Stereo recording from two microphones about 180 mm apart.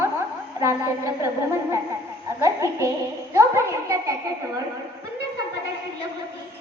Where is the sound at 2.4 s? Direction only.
15° right (ahead or behind).